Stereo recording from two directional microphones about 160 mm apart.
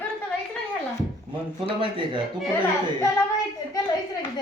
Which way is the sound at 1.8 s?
30° right (ahead or behind).